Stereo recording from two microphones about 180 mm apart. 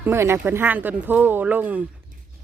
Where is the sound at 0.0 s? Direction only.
15° right (ahead or behind).